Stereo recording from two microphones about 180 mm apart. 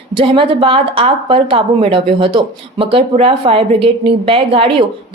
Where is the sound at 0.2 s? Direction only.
30° right (ahead or behind).